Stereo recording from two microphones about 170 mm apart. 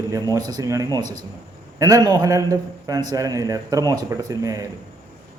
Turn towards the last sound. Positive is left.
turn(degrees=-20)  # may be behind; listen again after turning